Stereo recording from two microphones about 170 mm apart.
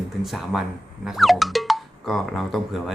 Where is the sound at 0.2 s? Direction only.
Centre (ahead or behind).